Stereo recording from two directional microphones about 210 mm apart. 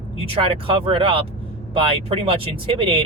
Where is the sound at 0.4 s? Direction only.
25° right (ahead or behind).